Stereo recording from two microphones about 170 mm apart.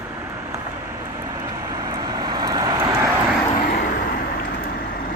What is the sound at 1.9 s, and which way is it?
Vehicle, 25° right (ahead or behind).